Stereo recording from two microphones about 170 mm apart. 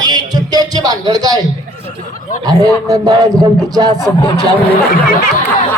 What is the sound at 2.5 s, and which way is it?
Speech, 20° right (ahead or behind).